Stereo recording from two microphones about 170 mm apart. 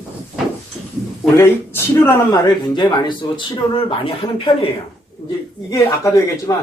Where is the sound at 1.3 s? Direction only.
15° left (ahead or behind).